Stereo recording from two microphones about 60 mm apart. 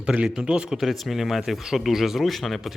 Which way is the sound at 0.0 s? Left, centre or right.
Centre.